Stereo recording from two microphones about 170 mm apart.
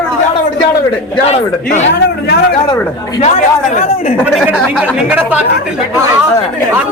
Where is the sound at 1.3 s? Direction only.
40° left (ahead or behind).